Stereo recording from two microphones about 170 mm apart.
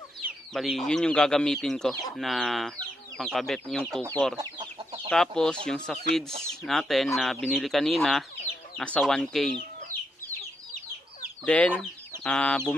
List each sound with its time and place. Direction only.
0.5 s speech: centre (ahead or behind)
4.4 s chicken: 25° right (ahead or behind)
5.1 s speech: 5° left (ahead or behind)
11.4 s speech: 5° left (ahead or behind)